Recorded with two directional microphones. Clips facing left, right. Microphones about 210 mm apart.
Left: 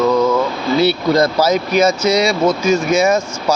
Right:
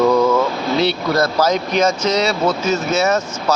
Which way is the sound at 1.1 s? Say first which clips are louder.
Left 3 dB; 10° left (ahead or behind).